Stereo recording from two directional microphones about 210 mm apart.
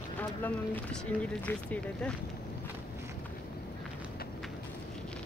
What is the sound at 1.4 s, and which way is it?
Speech, 5° left (ahead or behind).